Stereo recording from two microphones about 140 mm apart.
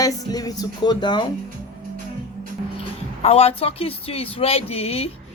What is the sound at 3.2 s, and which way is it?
Speech, 45° left (ahead or behind).